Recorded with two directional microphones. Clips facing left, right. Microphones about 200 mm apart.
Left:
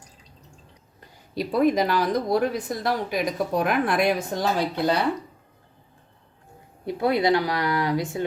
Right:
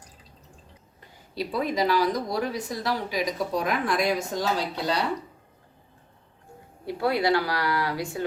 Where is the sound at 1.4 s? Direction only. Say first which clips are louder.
Left 5 dB; 50° left (ahead or behind).